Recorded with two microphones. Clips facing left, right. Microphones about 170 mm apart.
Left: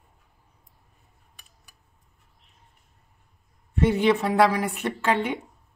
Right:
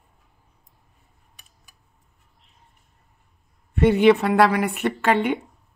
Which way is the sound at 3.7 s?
65° right (ahead or behind).